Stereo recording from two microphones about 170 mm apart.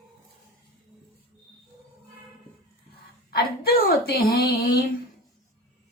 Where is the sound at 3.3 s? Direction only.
65° left (ahead or behind).